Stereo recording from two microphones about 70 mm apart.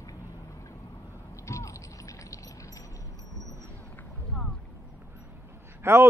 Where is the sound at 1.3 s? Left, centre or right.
Left.